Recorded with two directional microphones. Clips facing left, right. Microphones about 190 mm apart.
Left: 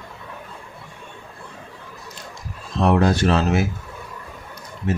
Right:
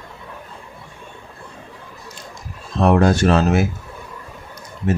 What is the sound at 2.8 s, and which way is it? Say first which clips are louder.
Speech: right 3 dB; 50° right (ahead or behind).